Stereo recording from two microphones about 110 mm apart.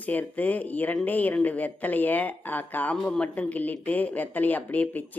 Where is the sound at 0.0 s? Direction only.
15° left (ahead or behind).